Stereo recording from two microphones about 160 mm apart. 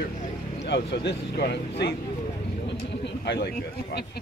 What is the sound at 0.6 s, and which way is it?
A man's voice, 90° left.